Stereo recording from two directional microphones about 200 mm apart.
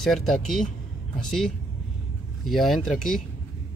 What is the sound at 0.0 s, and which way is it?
Speech, centre (ahead or behind).